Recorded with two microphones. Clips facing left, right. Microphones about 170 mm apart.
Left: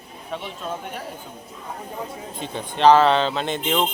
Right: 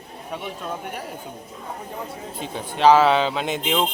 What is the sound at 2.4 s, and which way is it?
Speech, 5° right (ahead or behind).